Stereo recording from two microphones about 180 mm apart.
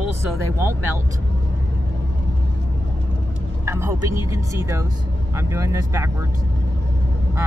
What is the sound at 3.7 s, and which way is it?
Speech, 15° right (ahead or behind).